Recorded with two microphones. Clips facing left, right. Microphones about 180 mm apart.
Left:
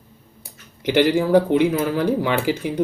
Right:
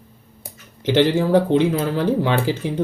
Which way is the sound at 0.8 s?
10° left (ahead or behind).